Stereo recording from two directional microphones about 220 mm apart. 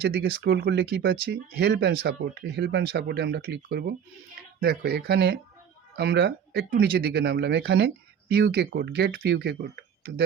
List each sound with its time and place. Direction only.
0.0 s speech: 45° right (ahead or behind)